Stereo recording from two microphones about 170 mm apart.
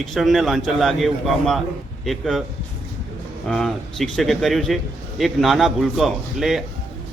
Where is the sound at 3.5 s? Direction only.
5° left (ahead or behind).